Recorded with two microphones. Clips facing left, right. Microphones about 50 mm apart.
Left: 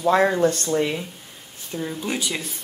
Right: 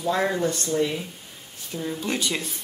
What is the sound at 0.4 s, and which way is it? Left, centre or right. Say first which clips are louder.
Speech: left 4 dB; left.